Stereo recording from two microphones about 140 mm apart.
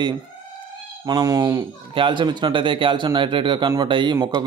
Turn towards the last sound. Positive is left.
turn(degrees=-20)  # may be behind; listen again after turning